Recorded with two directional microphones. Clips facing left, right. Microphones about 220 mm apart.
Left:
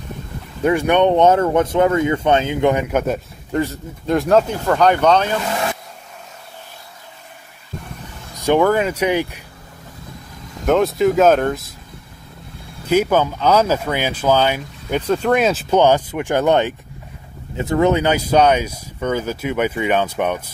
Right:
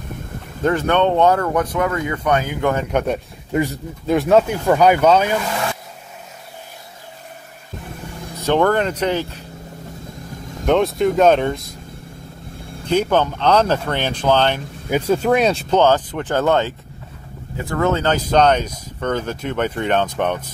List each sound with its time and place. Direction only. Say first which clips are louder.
0.7 s speech: left 2 dB; 15° left (ahead or behind)
2.9 s speech: even; 5° left (ahead or behind)
3.5 s speech: right 1 dB; 5° right (ahead or behind)
8.4 s speech: left 1 dB; 10° left (ahead or behind)
10.6 s speech: left 1 dB; centre (ahead or behind)
12.8 s speech: left 1 dB; 5° left (ahead or behind)
14.9 s speech: right 1 dB; 5° right (ahead or behind); by 20.4 s 10° left (ahead or behind)